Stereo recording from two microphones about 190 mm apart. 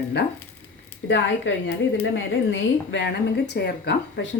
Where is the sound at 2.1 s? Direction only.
90° left.